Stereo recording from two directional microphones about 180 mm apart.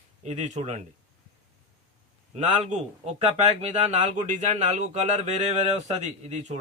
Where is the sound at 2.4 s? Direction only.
40° right (ahead or behind).